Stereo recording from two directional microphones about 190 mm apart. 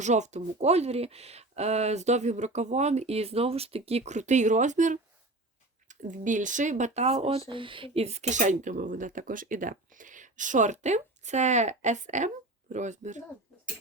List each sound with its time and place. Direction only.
0.0 s speech: 40° right (ahead or behind)